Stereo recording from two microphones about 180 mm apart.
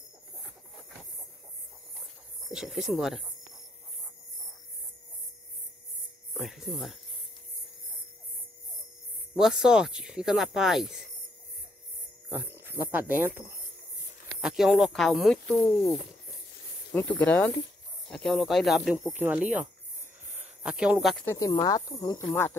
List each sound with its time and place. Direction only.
2.5 s speech: centre (ahead or behind)
6.3 s music: centre (ahead or behind)
9.4 s speech: 5° right (ahead or behind)
12.3 s speech: 10° right (ahead or behind)
17.1 s speech: 10° left (ahead or behind)
21.3 s speech: 20° left (ahead or behind)